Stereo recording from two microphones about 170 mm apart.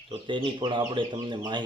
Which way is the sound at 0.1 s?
30° right (ahead or behind).